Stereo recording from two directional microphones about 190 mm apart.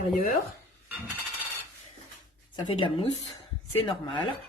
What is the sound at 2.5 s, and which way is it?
Speech, 25° left (ahead or behind).